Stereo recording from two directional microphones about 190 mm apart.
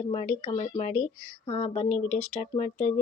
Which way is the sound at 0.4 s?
35° left (ahead or behind).